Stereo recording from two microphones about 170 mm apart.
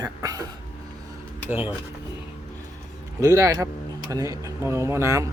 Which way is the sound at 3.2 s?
20° right (ahead or behind).